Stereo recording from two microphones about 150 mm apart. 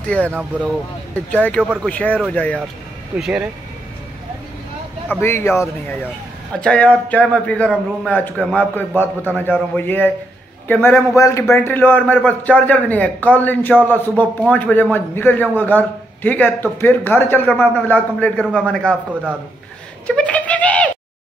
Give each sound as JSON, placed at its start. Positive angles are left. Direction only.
{"t": 0.0, "sound": "speech", "side_deg": 10}
{"t": 0.3, "sound": "speech", "side_deg": -10}
{"t": 1.3, "sound": "a man's voice", "side_deg": 10}
{"t": 1.6, "sound": "speech", "side_deg": -10}
{"t": 1.9, "sound": "a man's voice", "side_deg": 10}
{"t": 3.2, "sound": "speech", "side_deg": -5}
{"t": 5.1, "sound": "a man's voice", "side_deg": 15}
{"t": 20.1, "sound": "a sound", "side_deg": 10}